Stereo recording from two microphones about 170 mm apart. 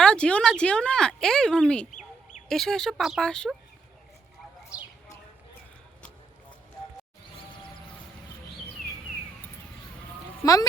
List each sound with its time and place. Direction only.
0.0 s a sound: 5° left (ahead or behind)
1.9 s fowl: 45° left (ahead or behind)
2.5 s speech: centre (ahead or behind)
10.4 s speech: 20° left (ahead or behind)